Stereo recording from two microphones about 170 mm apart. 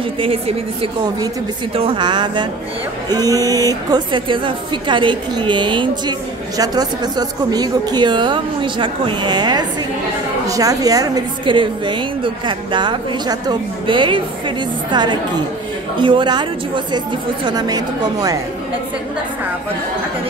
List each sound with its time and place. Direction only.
0.2 s a woman's voice: 35° right (ahead or behind)
1.8 s a woman's voice: 30° right (ahead or behind)